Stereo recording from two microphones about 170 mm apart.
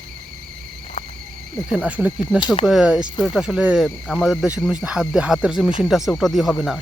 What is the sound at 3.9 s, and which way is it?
Speech, 10° left (ahead or behind).